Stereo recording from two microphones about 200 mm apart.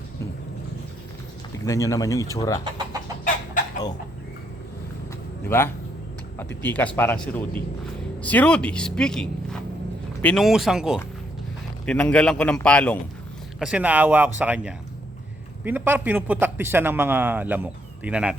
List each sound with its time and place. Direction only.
1.5 s speech: 15° left (ahead or behind)
5.5 s speech: 10° left (ahead or behind)
13.6 s a man's voice: 5° right (ahead or behind)